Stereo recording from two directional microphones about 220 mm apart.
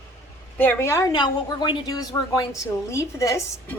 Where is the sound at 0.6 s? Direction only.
10° left (ahead or behind).